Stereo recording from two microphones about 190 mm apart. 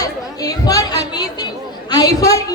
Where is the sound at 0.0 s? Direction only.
20° left (ahead or behind).